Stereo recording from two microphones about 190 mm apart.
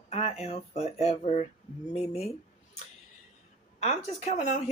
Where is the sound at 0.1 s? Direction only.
35° left (ahead or behind).